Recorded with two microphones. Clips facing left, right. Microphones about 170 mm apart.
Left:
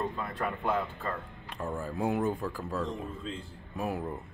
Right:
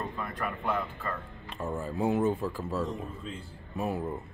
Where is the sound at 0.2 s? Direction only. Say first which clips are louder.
Left 1 dB; 25° left (ahead or behind).